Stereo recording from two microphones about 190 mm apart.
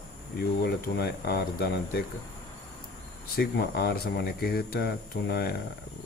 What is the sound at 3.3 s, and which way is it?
Speech, 60° left (ahead or behind).